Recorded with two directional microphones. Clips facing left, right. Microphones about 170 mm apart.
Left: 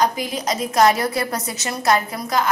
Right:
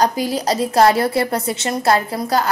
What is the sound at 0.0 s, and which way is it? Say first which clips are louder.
A woman's voice: right 3 dB; 35° right (ahead or behind).